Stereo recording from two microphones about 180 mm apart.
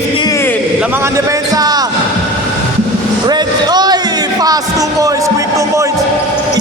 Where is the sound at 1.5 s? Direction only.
20° right (ahead or behind).